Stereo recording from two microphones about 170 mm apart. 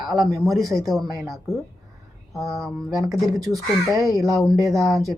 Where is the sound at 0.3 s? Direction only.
20° right (ahead or behind).